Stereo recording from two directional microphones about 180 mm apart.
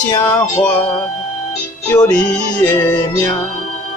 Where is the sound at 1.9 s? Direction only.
10° left (ahead or behind).